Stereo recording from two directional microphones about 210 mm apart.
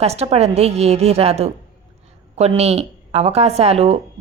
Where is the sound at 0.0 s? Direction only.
30° right (ahead or behind).